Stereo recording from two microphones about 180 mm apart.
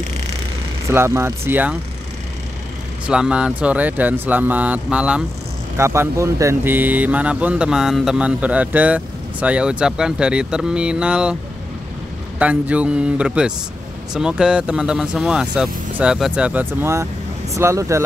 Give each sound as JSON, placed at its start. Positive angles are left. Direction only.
{"t": 0.8, "sound": "speech", "side_deg": -15}
{"t": 3.1, "sound": "speech", "side_deg": -5}
{"t": 12.4, "sound": "speech", "side_deg": -10}